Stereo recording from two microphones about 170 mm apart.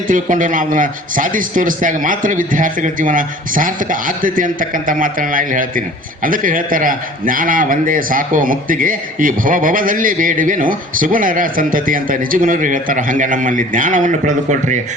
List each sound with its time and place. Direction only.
0.1 s a man's voice: 50° right (ahead or behind)